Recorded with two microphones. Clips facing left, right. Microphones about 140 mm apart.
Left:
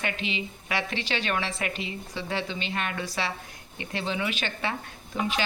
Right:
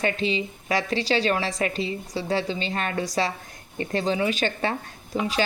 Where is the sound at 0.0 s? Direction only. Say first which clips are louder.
Right 7 dB; 35° right (ahead or behind).